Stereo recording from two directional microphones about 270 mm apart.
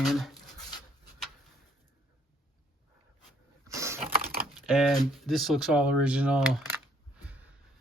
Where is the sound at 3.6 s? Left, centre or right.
Centre.